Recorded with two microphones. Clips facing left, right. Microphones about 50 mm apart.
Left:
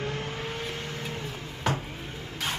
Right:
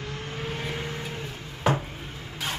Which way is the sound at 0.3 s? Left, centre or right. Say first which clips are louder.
Right 1 dB; centre.